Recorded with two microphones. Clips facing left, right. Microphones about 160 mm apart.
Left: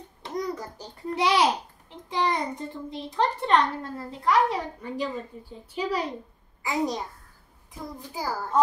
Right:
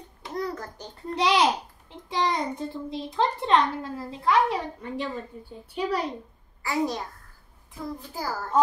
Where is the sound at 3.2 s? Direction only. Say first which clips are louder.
Even; centre (ahead or behind).